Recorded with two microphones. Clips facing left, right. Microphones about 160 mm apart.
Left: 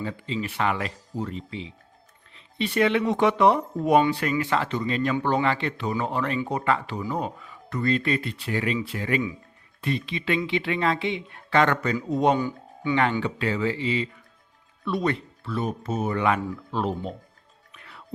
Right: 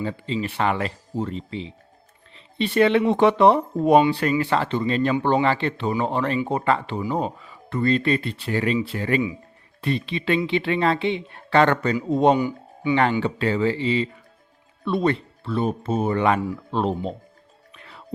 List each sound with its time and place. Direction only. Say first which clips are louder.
0.0 s speech: right 4 dB; 30° right (ahead or behind)
2.3 s a sound: right 4 dB; 30° right (ahead or behind)
3.1 s speech: right 4 dB; 30° right (ahead or behind)
12.4 s speech: right 4 dB; 15° right (ahead or behind)
12.9 s speech: right 3 dB; 35° right (ahead or behind)
17.7 s music: right 2 dB; 30° right (ahead or behind)